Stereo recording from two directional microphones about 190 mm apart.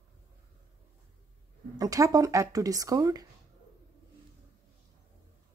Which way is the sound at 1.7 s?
20° right (ahead or behind).